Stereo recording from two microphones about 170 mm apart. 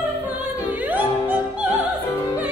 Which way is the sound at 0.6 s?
10° right (ahead or behind).